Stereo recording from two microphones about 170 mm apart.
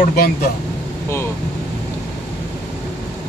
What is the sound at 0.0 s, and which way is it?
Speech, 60° left (ahead or behind).